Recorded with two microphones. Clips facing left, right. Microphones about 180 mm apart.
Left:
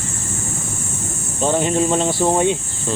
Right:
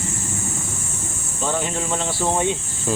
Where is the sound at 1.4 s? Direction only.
20° left (ahead or behind).